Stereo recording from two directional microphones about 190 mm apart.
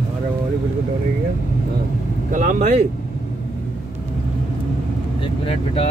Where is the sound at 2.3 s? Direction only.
40° right (ahead or behind).